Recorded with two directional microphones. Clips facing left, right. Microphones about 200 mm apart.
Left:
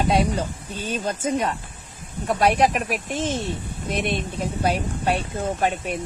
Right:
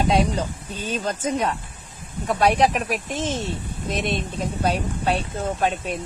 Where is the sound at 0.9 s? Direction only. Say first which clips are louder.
Even; 10° left (ahead or behind).